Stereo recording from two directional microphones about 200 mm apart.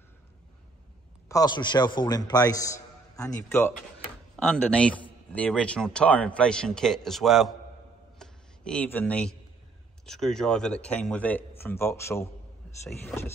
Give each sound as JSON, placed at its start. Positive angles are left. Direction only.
{"t": 1.3, "sound": "a man's voice", "side_deg": 20}
{"t": 8.2, "sound": "a sound", "side_deg": 5}
{"t": 10.0, "sound": "speech", "side_deg": 0}
{"t": 12.6, "sound": "wild animals", "side_deg": 5}
{"t": 13.0, "sound": "speech", "side_deg": 10}